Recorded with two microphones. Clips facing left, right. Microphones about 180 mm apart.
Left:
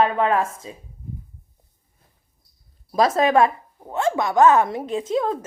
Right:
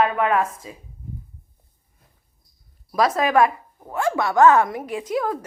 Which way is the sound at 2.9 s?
25° left (ahead or behind).